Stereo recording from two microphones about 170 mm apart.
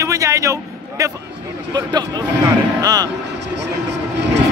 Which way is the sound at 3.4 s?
90° right.